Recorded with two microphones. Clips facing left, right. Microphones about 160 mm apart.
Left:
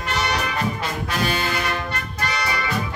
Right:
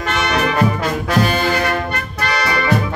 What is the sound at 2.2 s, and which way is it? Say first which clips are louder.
Music: right 7 dB; 75° right (ahead or behind).